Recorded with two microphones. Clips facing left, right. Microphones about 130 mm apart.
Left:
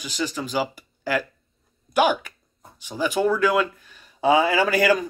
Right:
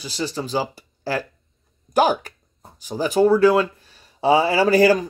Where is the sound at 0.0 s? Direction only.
35° right (ahead or behind).